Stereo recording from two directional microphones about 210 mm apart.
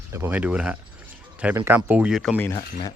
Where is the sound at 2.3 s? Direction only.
10° left (ahead or behind).